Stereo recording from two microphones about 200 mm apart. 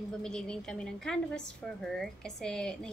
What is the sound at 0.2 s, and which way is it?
A woman's voice, 5° left (ahead or behind).